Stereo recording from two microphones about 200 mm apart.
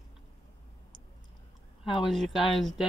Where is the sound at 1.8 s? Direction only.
Centre (ahead or behind).